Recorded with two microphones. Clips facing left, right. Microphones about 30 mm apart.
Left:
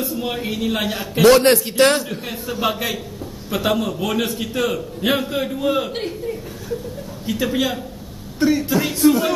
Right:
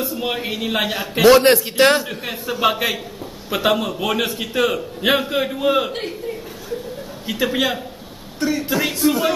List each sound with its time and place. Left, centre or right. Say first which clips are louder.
0.2 s a man's voice: even; centre
8.4 s speech: left 4 dB; centre
8.6 s a man's voice: left 2 dB; centre